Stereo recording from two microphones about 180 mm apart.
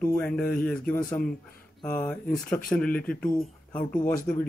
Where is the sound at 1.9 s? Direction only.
5° left (ahead or behind).